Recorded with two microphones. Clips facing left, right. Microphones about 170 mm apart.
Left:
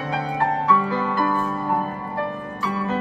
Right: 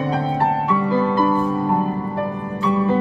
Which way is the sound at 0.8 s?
15° right (ahead or behind).